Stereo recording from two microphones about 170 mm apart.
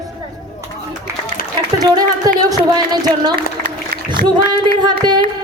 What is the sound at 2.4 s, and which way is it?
A woman's voice, 25° right (ahead or behind).